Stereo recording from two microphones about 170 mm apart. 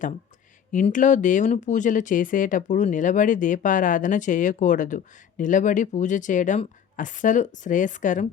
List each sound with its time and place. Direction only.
0.7 s speech: 50° left (ahead or behind)